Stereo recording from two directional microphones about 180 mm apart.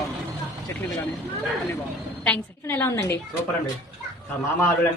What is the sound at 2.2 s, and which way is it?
Speech, 10° left (ahead or behind).